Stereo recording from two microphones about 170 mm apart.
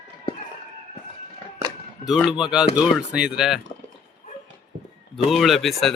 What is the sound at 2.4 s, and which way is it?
Speech, 5° right (ahead or behind).